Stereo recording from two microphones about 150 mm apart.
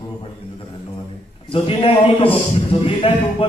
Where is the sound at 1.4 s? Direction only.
40° left (ahead or behind).